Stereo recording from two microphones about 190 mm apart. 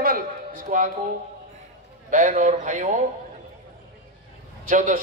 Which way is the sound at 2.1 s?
40° right (ahead or behind).